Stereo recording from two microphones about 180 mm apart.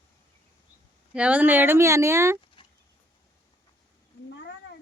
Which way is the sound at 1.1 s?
5° right (ahead or behind).